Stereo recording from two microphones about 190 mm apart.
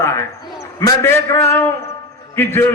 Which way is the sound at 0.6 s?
15° left (ahead or behind).